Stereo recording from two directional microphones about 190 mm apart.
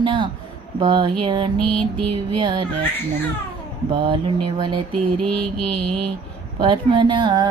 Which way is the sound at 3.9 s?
25° right (ahead or behind).